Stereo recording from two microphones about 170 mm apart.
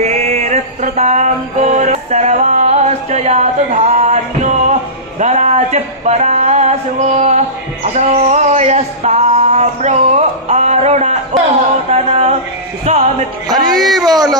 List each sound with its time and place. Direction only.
0.0 s music: 40° right (ahead or behind)
5.2 s a sound: 45° right (ahead or behind)
11.9 s music: 40° right (ahead or behind)
13.7 s speech: centre (ahead or behind)